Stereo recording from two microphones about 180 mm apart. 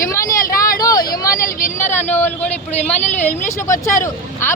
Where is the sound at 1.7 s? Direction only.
10° left (ahead or behind).